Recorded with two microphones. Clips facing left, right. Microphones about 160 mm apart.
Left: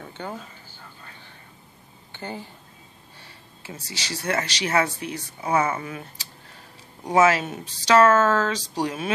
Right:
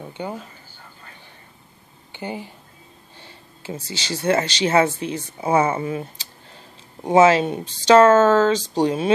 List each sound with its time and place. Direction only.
0.0 s speech: 15° right (ahead or behind)
2.1 s speech: 15° right (ahead or behind)
3.2 s speech: 25° right (ahead or behind)